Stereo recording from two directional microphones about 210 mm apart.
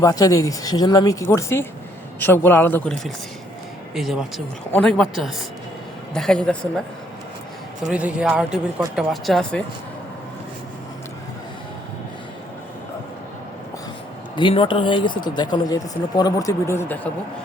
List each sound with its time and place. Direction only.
0.0 s speech: 15° left (ahead or behind)
7.9 s speech: 5° right (ahead or behind)
14.3 s speech: 25° left (ahead or behind)